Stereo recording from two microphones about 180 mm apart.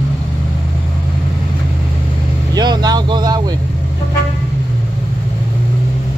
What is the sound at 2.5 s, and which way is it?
Vehicle, 25° right (ahead or behind).